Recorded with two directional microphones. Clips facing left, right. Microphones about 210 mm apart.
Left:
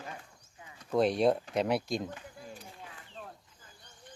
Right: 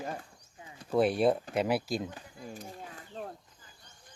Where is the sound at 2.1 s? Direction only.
40° right (ahead or behind).